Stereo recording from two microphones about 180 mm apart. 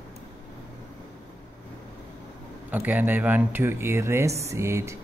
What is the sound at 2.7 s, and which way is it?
Speech, 10° right (ahead or behind).